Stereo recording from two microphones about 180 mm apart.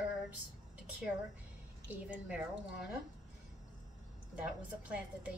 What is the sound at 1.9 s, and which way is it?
A woman's voice, 10° right (ahead or behind).